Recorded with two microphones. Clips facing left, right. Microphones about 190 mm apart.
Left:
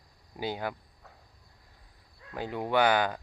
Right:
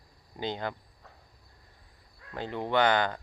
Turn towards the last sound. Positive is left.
turn(degrees=10)  # may be behind; listen again after turning